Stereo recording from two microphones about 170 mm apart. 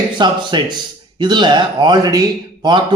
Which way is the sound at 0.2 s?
25° right (ahead or behind).